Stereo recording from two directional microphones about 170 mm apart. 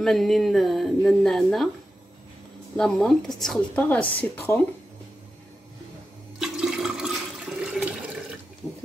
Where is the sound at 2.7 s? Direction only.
5° left (ahead or behind).